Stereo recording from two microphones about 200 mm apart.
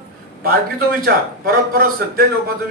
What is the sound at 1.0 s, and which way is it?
Speech, 50° right (ahead or behind).